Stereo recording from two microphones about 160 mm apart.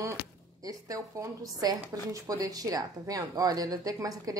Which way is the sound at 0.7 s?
20° right (ahead or behind).